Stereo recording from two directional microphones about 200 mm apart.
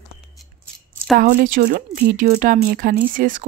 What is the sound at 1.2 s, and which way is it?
Speech, 45° right (ahead or behind).